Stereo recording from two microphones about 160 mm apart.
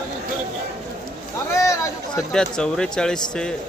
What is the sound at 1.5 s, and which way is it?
Speech, 20° left (ahead or behind).